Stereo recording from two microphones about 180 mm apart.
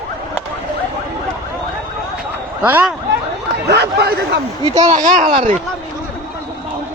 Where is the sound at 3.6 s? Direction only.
65° right (ahead or behind).